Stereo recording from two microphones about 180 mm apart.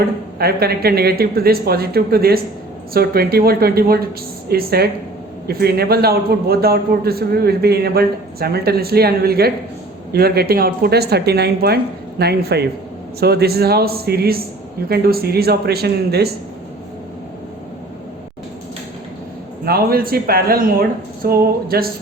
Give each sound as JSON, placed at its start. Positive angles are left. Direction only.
{"t": 0.3, "sound": "a man's voice", "side_deg": -60}
{"t": 19.6, "sound": "a man's voice", "side_deg": -55}